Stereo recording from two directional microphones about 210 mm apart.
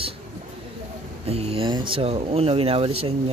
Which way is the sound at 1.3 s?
30° right (ahead or behind).